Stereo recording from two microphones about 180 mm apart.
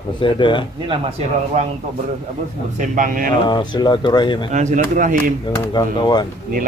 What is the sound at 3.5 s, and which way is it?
Speech, 25° left (ahead or behind).